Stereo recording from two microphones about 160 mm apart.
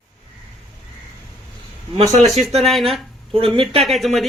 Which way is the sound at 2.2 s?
Centre (ahead or behind).